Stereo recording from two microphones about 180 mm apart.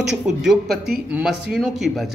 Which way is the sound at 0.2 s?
5° right (ahead or behind).